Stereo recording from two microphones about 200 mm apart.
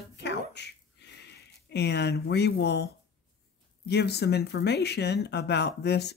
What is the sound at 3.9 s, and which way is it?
Speech, 55° left (ahead or behind).